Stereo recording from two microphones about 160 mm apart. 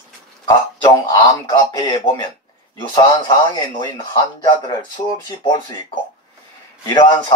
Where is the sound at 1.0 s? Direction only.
25° left (ahead or behind).